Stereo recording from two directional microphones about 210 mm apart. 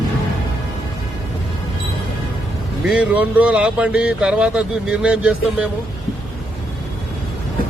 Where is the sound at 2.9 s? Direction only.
5° right (ahead or behind).